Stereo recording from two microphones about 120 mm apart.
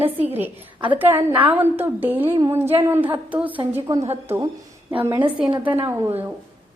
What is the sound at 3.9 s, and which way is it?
Speech, 30° right (ahead or behind).